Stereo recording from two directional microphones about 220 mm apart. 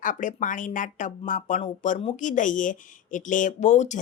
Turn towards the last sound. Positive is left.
turn(degrees=35)  # may be behind; listen again after turning